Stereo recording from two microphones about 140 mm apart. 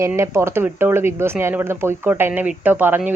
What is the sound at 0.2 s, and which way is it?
Speech, 20° right (ahead or behind).